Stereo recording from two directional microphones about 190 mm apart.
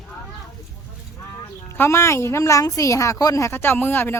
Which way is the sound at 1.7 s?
15° left (ahead or behind).